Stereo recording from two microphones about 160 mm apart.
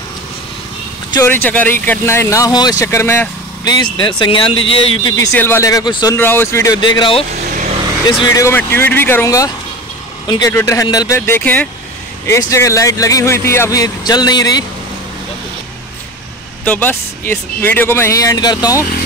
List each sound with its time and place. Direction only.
1.1 s speech: 15° left (ahead or behind)
3.7 s speech: 30° left (ahead or behind)
5.3 s speech: 15° left (ahead or behind)
6.1 s speech: 15° left (ahead or behind); by 7.2 s 30° left (ahead or behind)
7.5 s vehicle: 45° right (ahead or behind)
8.2 s speech: 20° left (ahead or behind)
16.6 s speech: 10° left (ahead or behind)